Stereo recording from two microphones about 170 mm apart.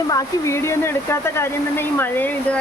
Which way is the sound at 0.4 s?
15° left (ahead or behind).